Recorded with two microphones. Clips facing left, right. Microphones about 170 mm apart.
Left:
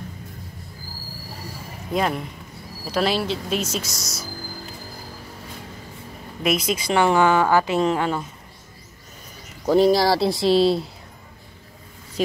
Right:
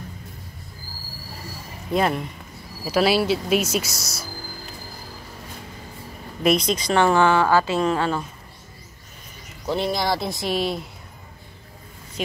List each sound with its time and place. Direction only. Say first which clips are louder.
2.0 s speech: right 1 dB; centre (ahead or behind)
6.4 s speech: right 2 dB; 5° left (ahead or behind)
9.7 s speech: left 7 dB; 40° left (ahead or behind)